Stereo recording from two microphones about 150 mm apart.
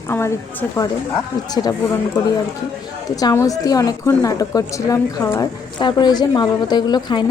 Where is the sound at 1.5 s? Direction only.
25° left (ahead or behind).